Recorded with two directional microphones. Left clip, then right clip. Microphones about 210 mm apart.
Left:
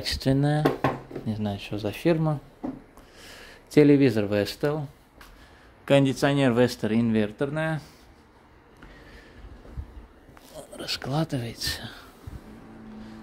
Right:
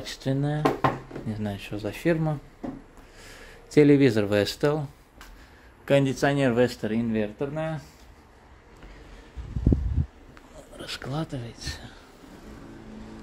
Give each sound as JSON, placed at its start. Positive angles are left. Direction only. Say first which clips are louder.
{"t": 0.0, "sound": "speech", "louder": "left 4 dB", "side_deg": 25}
{"t": 1.3, "sound": "speech", "louder": "left 2 dB", "side_deg": 10}
{"t": 5.9, "sound": "speech", "louder": "left 1 dB", "side_deg": 15}
{"t": 10.8, "sound": "speech", "louder": "left 4 dB", "side_deg": 15}